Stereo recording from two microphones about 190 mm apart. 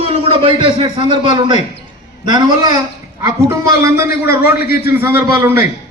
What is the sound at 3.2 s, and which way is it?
A man's voice, 15° right (ahead or behind).